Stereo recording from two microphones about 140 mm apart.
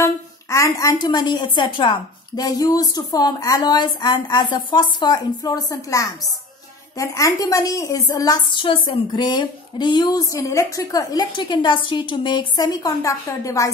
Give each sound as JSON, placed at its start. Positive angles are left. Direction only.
{"t": 0.0, "sound": "a woman's voice", "side_deg": 25}